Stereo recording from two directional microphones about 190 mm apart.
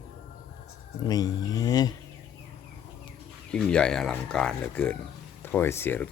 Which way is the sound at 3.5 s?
5° left (ahead or behind).